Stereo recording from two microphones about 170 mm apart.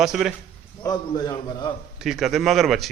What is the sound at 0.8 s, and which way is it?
Speech, 25° left (ahead or behind).